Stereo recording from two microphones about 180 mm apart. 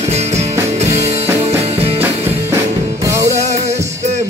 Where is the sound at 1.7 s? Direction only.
35° right (ahead or behind).